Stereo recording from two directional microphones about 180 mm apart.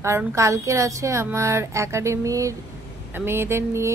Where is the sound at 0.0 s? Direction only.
15° right (ahead or behind).